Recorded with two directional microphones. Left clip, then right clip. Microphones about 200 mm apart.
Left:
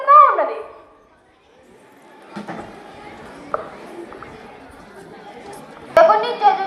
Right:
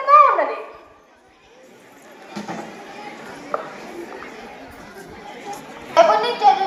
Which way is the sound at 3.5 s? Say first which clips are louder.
Left 1 dB; 20° right (ahead or behind).